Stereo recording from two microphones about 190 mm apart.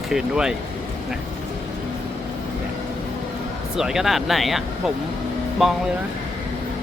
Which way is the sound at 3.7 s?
Centre (ahead or behind).